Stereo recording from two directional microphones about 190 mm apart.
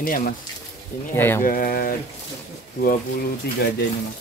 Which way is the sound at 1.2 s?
10° left (ahead or behind).